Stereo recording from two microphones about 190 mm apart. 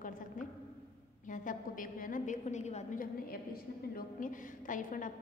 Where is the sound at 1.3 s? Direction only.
45° left (ahead or behind).